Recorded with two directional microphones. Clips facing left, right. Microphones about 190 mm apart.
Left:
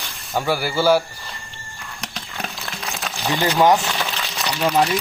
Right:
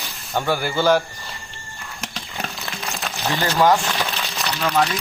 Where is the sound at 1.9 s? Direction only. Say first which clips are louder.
Right 1 dB; centre (ahead or behind).